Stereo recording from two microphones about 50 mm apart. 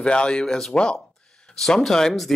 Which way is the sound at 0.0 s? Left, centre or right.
Centre.